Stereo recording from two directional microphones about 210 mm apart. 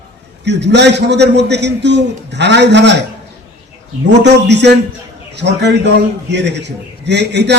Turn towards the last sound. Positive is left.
turn(degrees=-55)  # may be behind; listen again after turning